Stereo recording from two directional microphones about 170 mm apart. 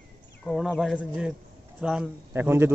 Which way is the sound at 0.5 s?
Centre (ahead or behind).